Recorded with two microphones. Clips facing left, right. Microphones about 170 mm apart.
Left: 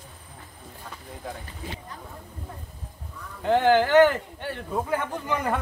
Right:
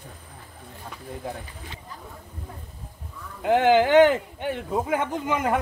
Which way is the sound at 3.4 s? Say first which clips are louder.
Right 1 dB; 15° right (ahead or behind).